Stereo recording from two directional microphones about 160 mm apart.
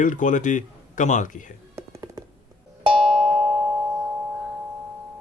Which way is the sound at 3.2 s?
5° right (ahead or behind).